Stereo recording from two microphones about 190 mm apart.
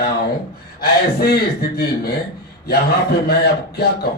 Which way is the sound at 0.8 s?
55° left (ahead or behind).